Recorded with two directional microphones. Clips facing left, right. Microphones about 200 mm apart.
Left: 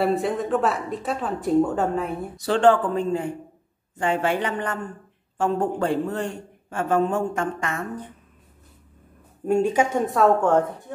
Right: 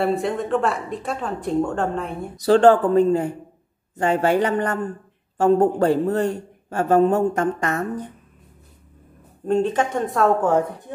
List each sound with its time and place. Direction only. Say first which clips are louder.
0.0 s speech: right 1 dB; centre (ahead or behind)
2.3 s a man's voice: right 4 dB; 40° right (ahead or behind)
9.5 s speech: even; 10° left (ahead or behind)